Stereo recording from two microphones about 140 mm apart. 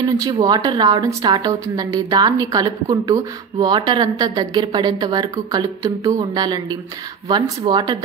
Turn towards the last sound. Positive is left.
turn(degrees=-30)  # may be behind; listen again after turning